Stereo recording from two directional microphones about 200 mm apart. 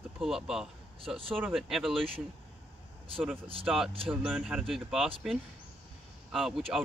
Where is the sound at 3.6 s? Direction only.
5° right (ahead or behind).